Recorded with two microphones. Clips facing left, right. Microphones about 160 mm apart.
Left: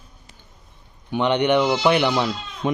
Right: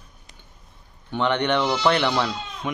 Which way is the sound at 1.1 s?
15° left (ahead or behind).